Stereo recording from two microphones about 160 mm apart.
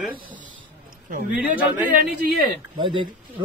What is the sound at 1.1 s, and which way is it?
Speech, 60° right (ahead or behind).